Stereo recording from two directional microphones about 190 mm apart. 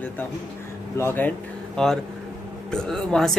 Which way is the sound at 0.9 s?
10° left (ahead or behind).